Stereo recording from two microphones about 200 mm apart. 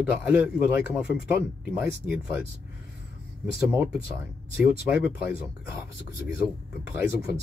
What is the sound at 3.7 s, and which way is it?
Speech, 5° right (ahead or behind).